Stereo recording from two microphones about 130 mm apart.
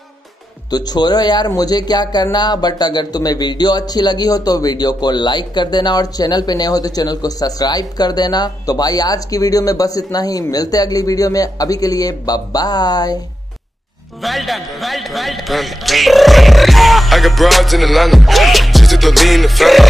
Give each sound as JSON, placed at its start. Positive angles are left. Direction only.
{"t": 0.7, "sound": "speech", "side_deg": 30}
{"t": 14.2, "sound": "speech", "side_deg": 0}